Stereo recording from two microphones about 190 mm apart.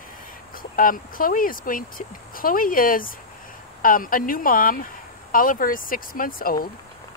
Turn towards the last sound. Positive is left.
turn(degrees=50)  # may be behind; listen again after turning